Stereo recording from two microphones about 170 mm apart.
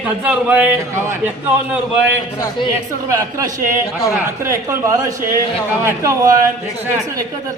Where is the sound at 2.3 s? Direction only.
20° left (ahead or behind).